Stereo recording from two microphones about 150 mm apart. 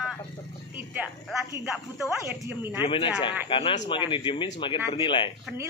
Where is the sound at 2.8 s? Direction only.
35° left (ahead or behind).